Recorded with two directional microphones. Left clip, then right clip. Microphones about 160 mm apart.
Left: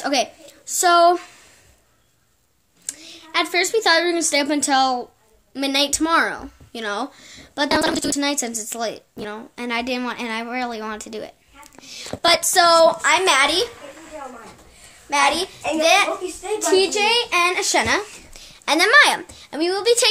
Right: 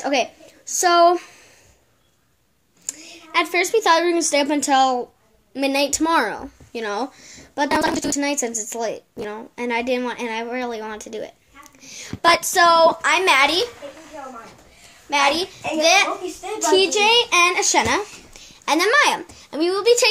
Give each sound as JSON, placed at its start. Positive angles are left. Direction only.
{"t": 0.0, "sound": "speech", "side_deg": 15}
{"t": 0.7, "sound": "a child's voice", "side_deg": 5}
{"t": 2.9, "sound": "a sound", "side_deg": 0}
{"t": 3.7, "sound": "a child's voice", "side_deg": 0}
{"t": 7.6, "sound": "a child's voice", "side_deg": 10}
{"t": 15.0, "sound": "a child's voice", "side_deg": 5}